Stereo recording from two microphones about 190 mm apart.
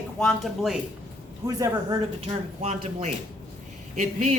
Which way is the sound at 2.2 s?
35° right (ahead or behind).